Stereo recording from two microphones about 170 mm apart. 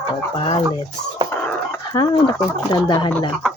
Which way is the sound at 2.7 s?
25° left (ahead or behind).